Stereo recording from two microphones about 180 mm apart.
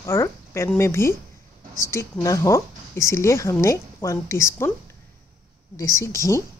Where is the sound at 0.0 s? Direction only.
15° left (ahead or behind).